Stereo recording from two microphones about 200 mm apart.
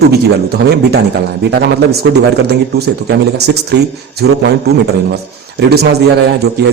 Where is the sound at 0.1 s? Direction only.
55° right (ahead or behind).